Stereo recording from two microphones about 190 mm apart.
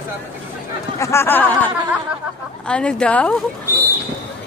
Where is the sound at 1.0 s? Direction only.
15° left (ahead or behind).